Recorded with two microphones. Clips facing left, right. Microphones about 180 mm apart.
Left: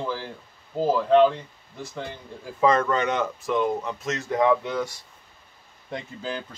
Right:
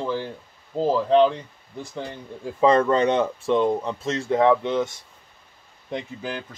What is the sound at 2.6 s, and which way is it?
Speech, 30° right (ahead or behind).